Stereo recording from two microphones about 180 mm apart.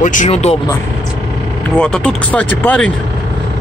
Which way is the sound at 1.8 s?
5° left (ahead or behind).